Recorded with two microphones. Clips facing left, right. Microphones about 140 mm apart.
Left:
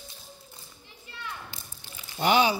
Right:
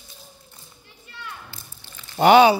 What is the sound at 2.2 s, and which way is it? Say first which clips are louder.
Speech: right 10 dB; 75° right (ahead or behind).